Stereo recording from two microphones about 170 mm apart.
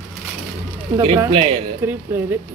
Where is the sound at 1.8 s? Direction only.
15° right (ahead or behind).